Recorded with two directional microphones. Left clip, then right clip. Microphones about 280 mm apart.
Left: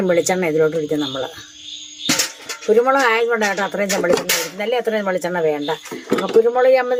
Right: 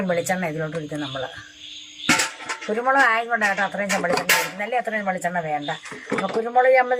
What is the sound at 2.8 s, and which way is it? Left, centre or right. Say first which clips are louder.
Speech: left 3 dB; left.